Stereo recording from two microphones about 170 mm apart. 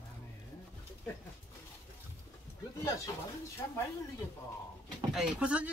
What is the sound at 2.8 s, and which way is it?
Speech, 20° left (ahead or behind).